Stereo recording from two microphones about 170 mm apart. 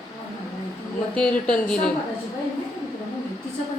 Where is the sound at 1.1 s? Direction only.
5° left (ahead or behind).